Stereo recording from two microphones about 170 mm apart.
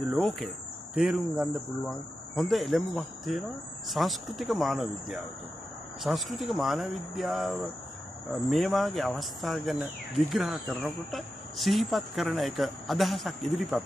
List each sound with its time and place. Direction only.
0.1 s speech: centre (ahead or behind)